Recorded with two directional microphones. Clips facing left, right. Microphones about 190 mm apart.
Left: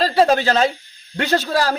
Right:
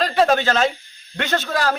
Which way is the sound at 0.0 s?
35° left (ahead or behind).